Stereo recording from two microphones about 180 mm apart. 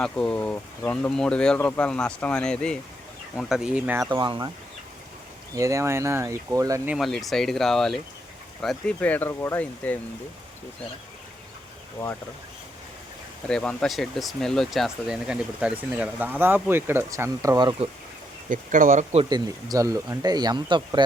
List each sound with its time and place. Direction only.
0.0 s speech: 5° left (ahead or behind)
4.1 s speech: 25° right (ahead or behind)
5.5 s speech: 15° right (ahead or behind)
6.9 s speech: centre (ahead or behind)
13.5 s speech: 5° left (ahead or behind); by 17.7 s 20° right (ahead or behind)
18.4 s speech: 45° right (ahead or behind)
19.2 s speech: 20° right (ahead or behind)